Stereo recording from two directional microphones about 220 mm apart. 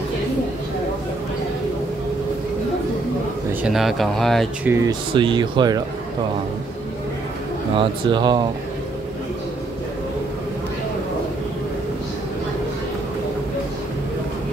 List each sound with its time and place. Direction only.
3.6 s speech: centre (ahead or behind)
4.7 s speech: 20° right (ahead or behind)
7.8 s speech: 20° right (ahead or behind)